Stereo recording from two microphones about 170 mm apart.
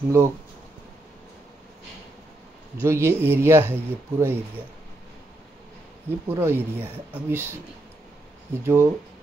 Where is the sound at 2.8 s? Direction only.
15° right (ahead or behind).